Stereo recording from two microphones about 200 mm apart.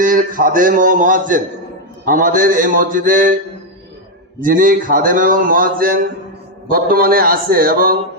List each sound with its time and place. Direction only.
0.0 s a man's voice: 45° right (ahead or behind)
4.4 s a man's voice: 45° right (ahead or behind)